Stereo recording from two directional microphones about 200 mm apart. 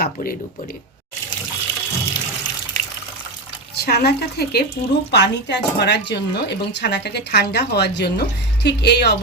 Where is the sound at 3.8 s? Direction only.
55° left (ahead or behind).